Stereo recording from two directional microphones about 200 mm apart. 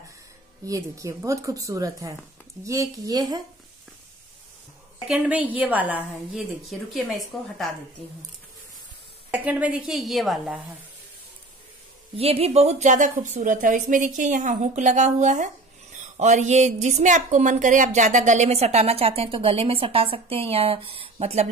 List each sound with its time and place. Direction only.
0.7 s a woman's voice: 15° right (ahead or behind)
5.0 s a woman's voice: 5° right (ahead or behind)
9.3 s a woman's voice: 10° right (ahead or behind)
12.2 s speech: 30° right (ahead or behind)